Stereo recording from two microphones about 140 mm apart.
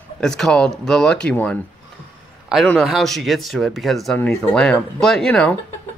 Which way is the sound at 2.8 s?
Centre (ahead or behind).